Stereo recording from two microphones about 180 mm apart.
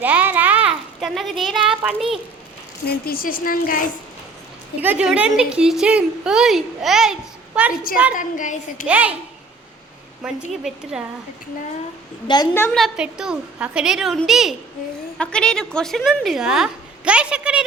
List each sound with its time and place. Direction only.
0.0 s a sound: 10° right (ahead or behind)
2.8 s a woman's voice: 60° left (ahead or behind)
4.8 s a woman's voice: 10° right (ahead or behind)
8.1 s a woman's voice: 45° left (ahead or behind)
8.9 s a child's voice: 10° right (ahead or behind)
10.2 s a woman's voice: 5° right (ahead or behind)
12.3 s a woman's voice: 25° left (ahead or behind)
12.7 s a woman's voice: centre (ahead or behind)